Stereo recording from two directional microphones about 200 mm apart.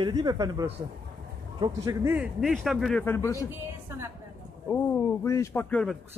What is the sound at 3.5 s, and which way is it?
Speech, 10° right (ahead or behind).